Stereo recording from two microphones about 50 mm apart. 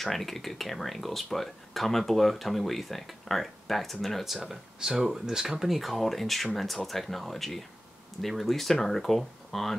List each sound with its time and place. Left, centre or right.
0.0 s speech: centre
4.5 s speech: centre